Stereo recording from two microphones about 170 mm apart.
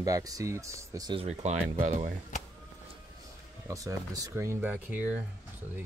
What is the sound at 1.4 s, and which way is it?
Speech, 45° right (ahead or behind).